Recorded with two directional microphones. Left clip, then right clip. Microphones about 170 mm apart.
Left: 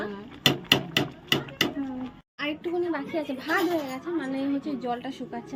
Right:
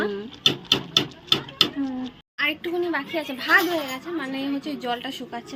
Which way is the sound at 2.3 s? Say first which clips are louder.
Right 5 dB; centre (ahead or behind).